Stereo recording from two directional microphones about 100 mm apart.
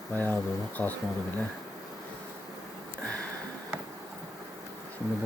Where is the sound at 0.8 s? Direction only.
30° left (ahead or behind).